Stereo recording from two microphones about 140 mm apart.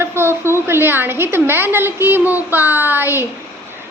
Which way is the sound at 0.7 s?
15° right (ahead or behind).